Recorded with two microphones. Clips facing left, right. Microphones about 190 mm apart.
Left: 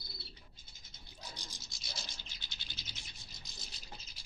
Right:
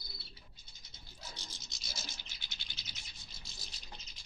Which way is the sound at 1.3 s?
15° left (ahead or behind).